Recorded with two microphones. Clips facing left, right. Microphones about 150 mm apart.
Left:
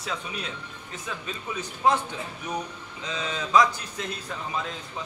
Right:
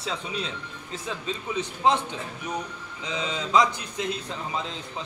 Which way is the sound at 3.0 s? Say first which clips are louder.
Right 1 dB; 15° right (ahead or behind).